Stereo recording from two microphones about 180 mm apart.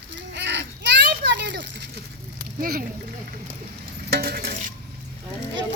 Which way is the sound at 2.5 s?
55° right (ahead or behind).